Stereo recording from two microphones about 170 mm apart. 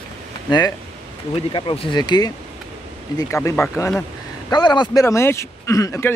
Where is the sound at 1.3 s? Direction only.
30° left (ahead or behind).